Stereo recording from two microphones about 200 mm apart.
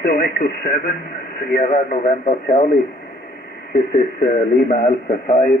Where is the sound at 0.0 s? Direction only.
50° left (ahead or behind).